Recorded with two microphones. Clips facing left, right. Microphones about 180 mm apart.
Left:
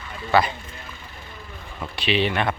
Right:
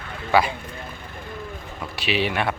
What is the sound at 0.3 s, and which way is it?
Speech, 10° right (ahead or behind).